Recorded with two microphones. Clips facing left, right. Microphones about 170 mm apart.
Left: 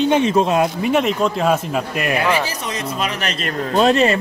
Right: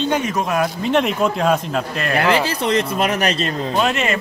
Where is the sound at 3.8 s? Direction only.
35° left (ahead or behind).